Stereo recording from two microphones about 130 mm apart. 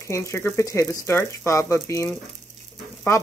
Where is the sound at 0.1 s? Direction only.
20° left (ahead or behind).